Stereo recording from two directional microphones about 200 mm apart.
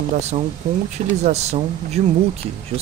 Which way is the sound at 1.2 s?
35° right (ahead or behind).